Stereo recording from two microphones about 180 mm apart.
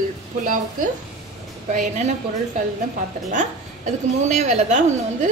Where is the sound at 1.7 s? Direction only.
40° right (ahead or behind).